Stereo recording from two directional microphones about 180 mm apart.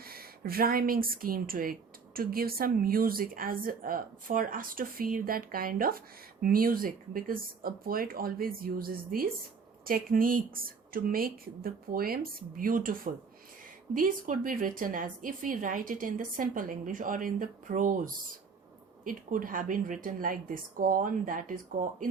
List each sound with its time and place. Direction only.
0.0 s a woman's voice: 55° right (ahead or behind)